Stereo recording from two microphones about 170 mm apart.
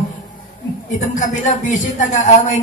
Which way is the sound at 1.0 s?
45° left (ahead or behind).